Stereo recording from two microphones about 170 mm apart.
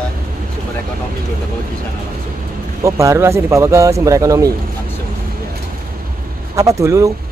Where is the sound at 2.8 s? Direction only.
20° right (ahead or behind).